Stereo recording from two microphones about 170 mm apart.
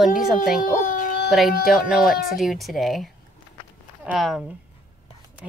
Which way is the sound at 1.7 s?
Centre (ahead or behind).